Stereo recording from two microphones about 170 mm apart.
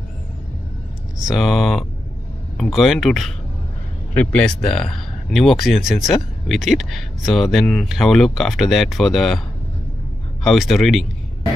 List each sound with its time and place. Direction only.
1.2 s speech: 5° right (ahead or behind)
10.4 s speech: centre (ahead or behind)